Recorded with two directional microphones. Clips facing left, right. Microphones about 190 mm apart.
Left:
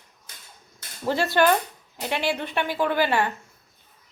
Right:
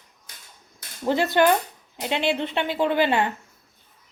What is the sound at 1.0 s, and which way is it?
A woman's voice, 20° right (ahead or behind).